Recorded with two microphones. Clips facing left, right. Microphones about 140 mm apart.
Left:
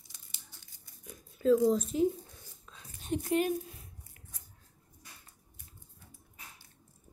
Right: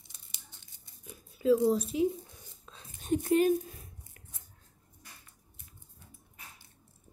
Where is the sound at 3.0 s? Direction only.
40° right (ahead or behind).